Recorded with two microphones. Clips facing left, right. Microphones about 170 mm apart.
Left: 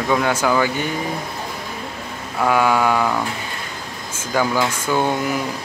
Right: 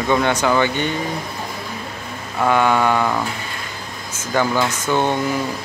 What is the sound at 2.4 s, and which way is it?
Speech, 5° left (ahead or behind).